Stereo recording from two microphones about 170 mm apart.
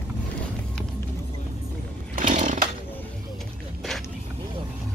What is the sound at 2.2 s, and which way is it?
Chainsaw, 50° right (ahead or behind).